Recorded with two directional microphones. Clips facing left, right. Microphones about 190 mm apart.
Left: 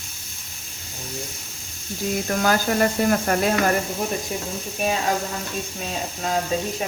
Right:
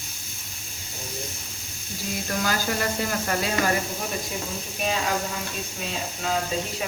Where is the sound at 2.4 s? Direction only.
50° left (ahead or behind).